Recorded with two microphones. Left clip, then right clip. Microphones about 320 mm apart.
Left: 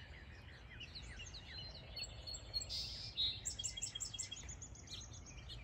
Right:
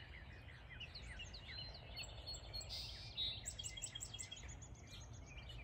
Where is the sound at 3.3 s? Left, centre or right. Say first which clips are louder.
Left 4 dB; left.